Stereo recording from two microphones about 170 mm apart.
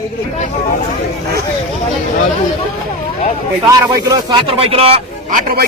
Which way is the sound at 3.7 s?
25° right (ahead or behind).